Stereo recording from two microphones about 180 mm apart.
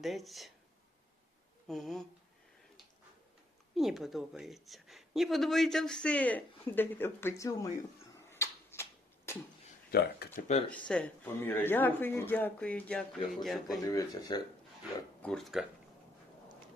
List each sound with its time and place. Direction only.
0.0 s a woman's voice: centre (ahead or behind)
1.6 s speech: centre (ahead or behind)
3.8 s a woman's voice: centre (ahead or behind); by 7.7 s 20° left (ahead or behind)
8.3 s a sound: 15° left (ahead or behind)
9.9 s speech: 60° left (ahead or behind)
10.7 s speech: 5° left (ahead or behind)
13.8 s speech: 20° left (ahead or behind)
15.2 s a woman's voice: centre (ahead or behind)